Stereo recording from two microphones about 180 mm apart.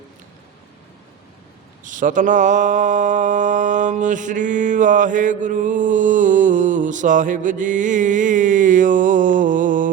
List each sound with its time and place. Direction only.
1.8 s mantra: 45° right (ahead or behind)